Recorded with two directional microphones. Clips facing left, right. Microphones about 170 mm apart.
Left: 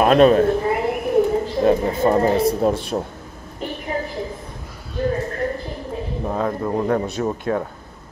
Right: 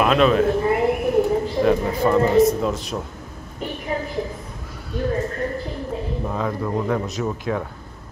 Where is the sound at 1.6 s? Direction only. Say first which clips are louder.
Left 2 dB; 30° left (ahead or behind).